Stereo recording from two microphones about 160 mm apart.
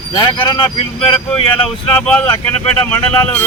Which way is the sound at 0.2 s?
30° left (ahead or behind).